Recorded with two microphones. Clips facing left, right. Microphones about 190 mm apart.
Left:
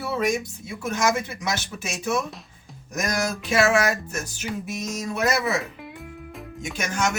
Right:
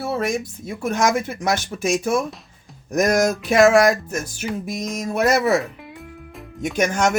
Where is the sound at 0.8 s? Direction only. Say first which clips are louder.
Right 4 dB; 55° right (ahead or behind).